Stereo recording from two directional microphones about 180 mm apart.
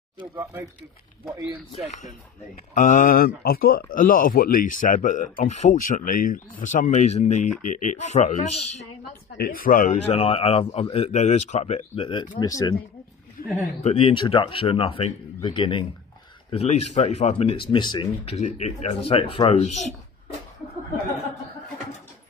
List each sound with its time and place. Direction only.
0.2 s speech: 15° right (ahead or behind)
2.0 s speech: 45° left (ahead or behind)
9.4 s speech: 50° left (ahead or behind); by 12.3 s 30° left (ahead or behind)
12.4 s speech: 20° left (ahead or behind)
13.8 s speech: 30° left (ahead or behind)